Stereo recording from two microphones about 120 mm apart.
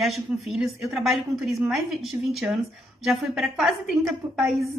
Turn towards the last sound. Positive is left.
turn(degrees=0)  # may be behind; listen again after turning